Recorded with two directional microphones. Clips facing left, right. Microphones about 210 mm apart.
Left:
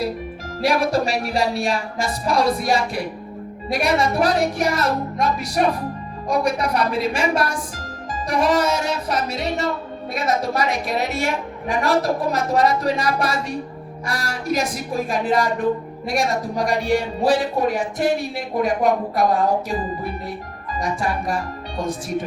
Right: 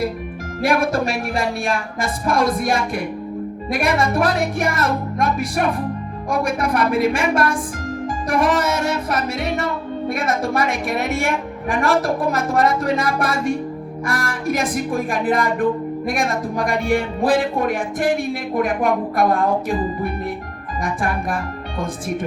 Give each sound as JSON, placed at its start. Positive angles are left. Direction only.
{"t": 0.6, "sound": "a woman's voice", "side_deg": -50}
{"t": 20.8, "sound": "a woman's voice", "side_deg": -55}